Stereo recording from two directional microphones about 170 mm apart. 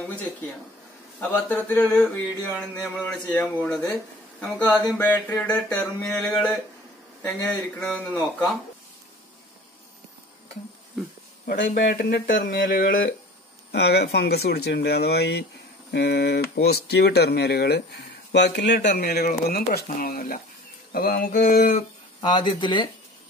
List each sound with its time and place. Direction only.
1.2 s a sound: 10° left (ahead or behind)
6.2 s speech: 5° left (ahead or behind)
7.2 s a sound: 10° left (ahead or behind)
11.6 s speech: 65° left (ahead or behind)
13.7 s speech: 75° left (ahead or behind)
18.3 s speech: 90° left; by 21.7 s 55° left (ahead or behind)
22.2 s speech: 30° left (ahead or behind)